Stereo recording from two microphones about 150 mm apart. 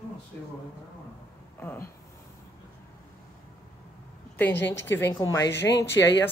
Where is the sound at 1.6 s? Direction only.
15° left (ahead or behind).